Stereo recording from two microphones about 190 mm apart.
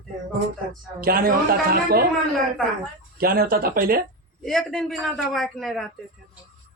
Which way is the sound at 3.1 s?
50° right (ahead or behind).